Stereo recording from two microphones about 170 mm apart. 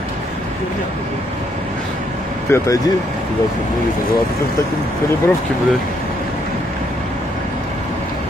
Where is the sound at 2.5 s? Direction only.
20° left (ahead or behind).